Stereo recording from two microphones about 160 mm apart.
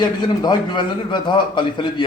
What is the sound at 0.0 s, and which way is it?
Speech, 25° left (ahead or behind).